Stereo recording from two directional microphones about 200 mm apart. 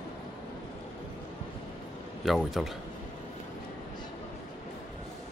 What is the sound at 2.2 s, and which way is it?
Speech, centre (ahead or behind).